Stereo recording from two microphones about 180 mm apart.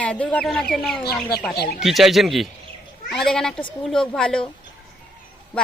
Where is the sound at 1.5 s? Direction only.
60° left (ahead or behind).